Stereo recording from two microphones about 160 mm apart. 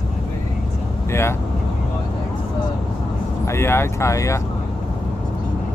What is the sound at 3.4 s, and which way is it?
Speech, 15° left (ahead or behind).